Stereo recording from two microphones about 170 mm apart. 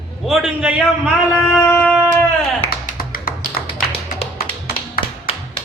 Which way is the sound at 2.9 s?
55° left (ahead or behind).